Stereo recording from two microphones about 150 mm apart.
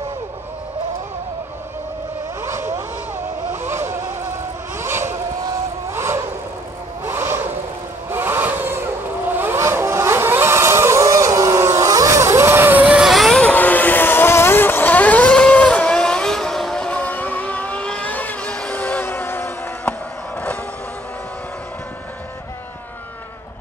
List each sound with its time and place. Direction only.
2.4 s vehicle: 15° right (ahead or behind)
7.1 s a sound: 15° right (ahead or behind)
8.1 s vehicle: 15° right (ahead or behind); by 20.0 s 10° left (ahead or behind)